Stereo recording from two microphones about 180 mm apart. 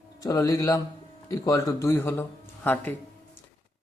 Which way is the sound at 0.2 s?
20° left (ahead or behind).